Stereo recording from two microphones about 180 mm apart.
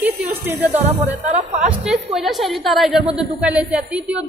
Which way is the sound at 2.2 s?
Centre (ahead or behind).